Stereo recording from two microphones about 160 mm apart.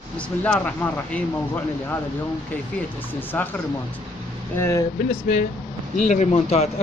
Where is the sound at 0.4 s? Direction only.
10° left (ahead or behind).